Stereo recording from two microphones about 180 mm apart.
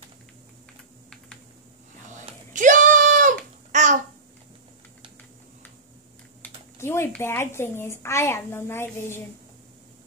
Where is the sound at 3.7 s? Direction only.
45° right (ahead or behind).